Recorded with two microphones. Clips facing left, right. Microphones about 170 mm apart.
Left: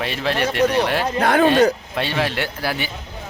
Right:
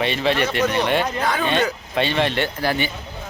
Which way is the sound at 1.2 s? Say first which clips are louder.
Left 7 dB; 60° left (ahead or behind).